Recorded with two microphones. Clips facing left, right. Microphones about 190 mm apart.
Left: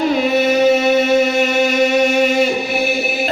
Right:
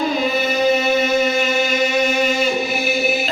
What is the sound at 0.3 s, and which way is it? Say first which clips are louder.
Music: left 5 dB; 70° left (ahead or behind).